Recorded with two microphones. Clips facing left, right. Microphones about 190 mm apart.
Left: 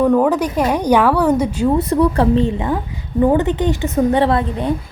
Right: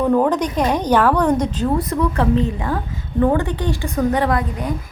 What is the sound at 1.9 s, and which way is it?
Speech, 30° left (ahead or behind).